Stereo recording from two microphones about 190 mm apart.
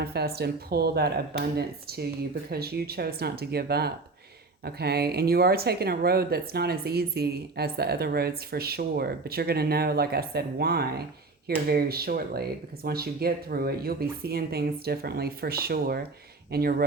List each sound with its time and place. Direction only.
0.0 s speech: 55° right (ahead or behind)